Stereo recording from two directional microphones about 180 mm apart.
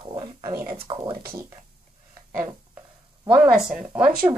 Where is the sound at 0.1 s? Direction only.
20° right (ahead or behind).